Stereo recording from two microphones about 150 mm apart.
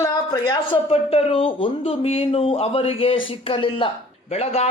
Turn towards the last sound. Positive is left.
turn(degrees=45)  # may be behind; listen again after turning